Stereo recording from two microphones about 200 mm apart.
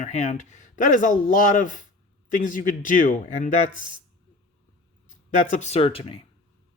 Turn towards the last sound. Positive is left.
turn(degrees=30)  # may be behind; listen again after turning